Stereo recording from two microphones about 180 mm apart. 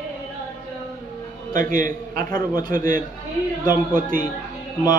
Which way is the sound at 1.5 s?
50° right (ahead or behind).